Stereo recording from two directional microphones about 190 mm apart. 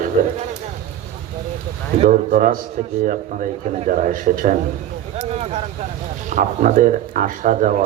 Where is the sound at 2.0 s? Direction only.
45° right (ahead or behind).